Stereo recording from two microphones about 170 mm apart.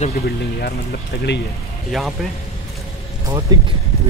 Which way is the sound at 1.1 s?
80° left.